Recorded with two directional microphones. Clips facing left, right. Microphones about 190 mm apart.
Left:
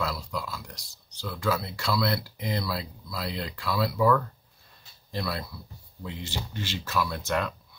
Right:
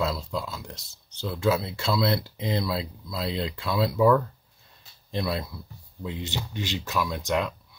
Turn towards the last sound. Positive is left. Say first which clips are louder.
# right 2 dB
turn(degrees=-15)  # may be behind; listen again after turning